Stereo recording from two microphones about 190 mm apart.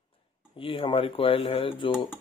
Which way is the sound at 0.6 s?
25° left (ahead or behind).